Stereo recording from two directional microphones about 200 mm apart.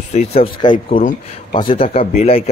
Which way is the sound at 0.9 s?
45° left (ahead or behind).